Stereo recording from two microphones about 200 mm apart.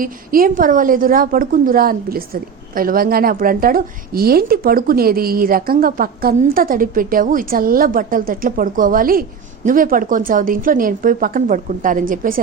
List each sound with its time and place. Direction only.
0.0 s a woman's voice: 45° right (ahead or behind)